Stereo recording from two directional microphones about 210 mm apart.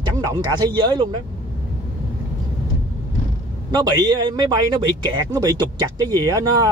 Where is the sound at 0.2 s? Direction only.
20° right (ahead or behind).